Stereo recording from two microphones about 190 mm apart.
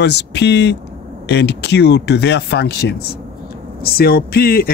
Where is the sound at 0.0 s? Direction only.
65° left (ahead or behind).